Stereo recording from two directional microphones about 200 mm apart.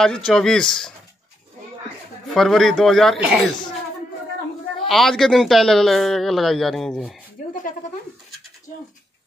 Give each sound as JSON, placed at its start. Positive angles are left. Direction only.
{"t": 0.0, "sound": "speech", "side_deg": 5}
{"t": 2.2, "sound": "speech", "side_deg": 0}
{"t": 4.8, "sound": "speech", "side_deg": 0}